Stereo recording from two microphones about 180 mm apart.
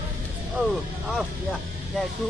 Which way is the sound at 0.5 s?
5° right (ahead or behind).